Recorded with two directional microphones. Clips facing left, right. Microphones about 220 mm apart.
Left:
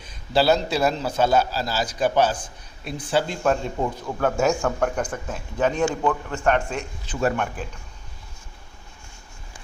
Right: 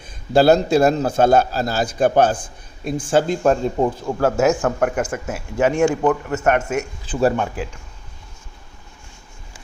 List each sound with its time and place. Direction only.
0.0 s a man's voice: 50° right (ahead or behind)
4.0 s speech: 25° right (ahead or behind)
4.4 s speech: 5° right (ahead or behind)
6.3 s speech: 5° right (ahead or behind)
7.1 s speech: 35° right (ahead or behind)